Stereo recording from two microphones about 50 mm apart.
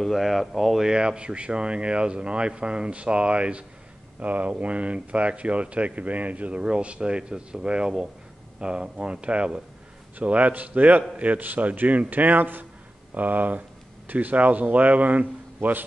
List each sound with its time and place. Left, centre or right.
0.0 s speech: centre
0.8 s a man's voice: centre; by 15.8 s right